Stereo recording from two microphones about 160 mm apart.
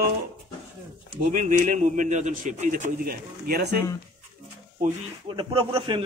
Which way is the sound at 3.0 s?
70° right (ahead or behind).